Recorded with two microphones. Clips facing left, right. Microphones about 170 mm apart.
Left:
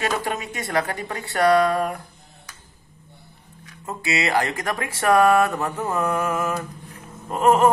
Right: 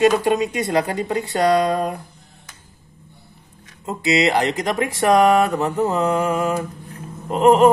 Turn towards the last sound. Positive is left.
turn(degrees=-20)  # may be behind; listen again after turning